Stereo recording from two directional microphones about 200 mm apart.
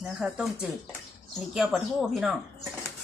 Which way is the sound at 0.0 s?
5° right (ahead or behind).